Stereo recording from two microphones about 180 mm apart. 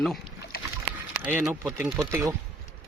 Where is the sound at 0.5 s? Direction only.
55° left (ahead or behind).